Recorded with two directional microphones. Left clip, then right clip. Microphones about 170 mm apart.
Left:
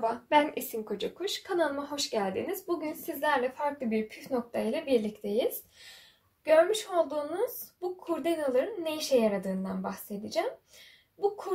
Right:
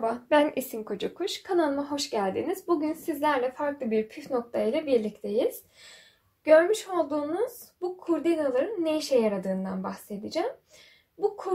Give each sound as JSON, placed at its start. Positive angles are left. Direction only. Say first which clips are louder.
{"t": 0.0, "sound": "a woman's voice", "louder": "right 2 dB", "side_deg": -55}